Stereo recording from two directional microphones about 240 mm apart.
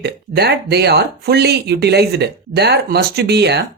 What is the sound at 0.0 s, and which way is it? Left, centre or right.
Speech, right.